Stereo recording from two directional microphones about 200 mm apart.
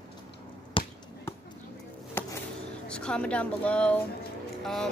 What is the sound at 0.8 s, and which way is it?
Basketball bounce, 25° left (ahead or behind).